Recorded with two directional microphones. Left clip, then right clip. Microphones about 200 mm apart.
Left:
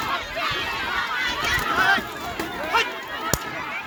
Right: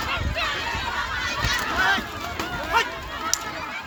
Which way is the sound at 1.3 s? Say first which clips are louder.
Left 2 dB; 55° right (ahead or behind).